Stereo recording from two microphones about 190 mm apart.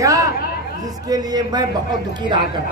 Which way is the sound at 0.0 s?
15° right (ahead or behind).